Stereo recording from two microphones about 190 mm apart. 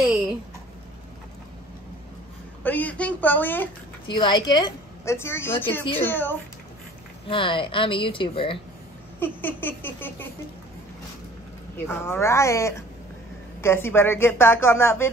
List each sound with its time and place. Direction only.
2.6 s a woman's voice: 10° left (ahead or behind)
4.1 s a woman's voice: 25° left (ahead or behind)
7.2 s speech: 25° left (ahead or behind)
9.2 s a woman's voice: 10° left (ahead or behind)
11.7 s a woman's voice: 10° left (ahead or behind)